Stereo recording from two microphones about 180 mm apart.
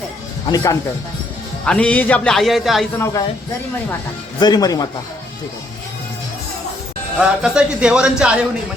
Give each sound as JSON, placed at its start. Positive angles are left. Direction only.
{"t": 0.5, "sound": "speech", "side_deg": 20}
{"t": 1.6, "sound": "speech", "side_deg": 5}
{"t": 3.0, "sound": "speech", "side_deg": 20}
{"t": 4.4, "sound": "speech", "side_deg": 25}
{"t": 7.2, "sound": "speech", "side_deg": -5}